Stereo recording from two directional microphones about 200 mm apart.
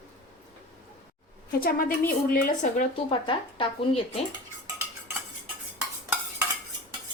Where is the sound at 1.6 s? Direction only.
45° left (ahead or behind); by 4.2 s 25° left (ahead or behind).